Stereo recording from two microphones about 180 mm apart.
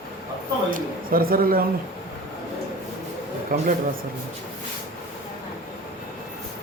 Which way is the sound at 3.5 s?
50° right (ahead or behind).